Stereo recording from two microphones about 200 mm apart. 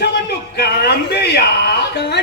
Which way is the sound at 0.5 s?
55° left (ahead or behind).